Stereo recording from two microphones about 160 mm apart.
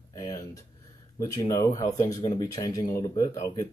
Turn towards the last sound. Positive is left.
turn(degrees=20)  # may be behind; listen again after turning